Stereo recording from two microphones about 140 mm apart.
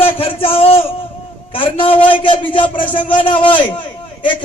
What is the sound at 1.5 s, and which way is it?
A man's voice, 40° left (ahead or behind).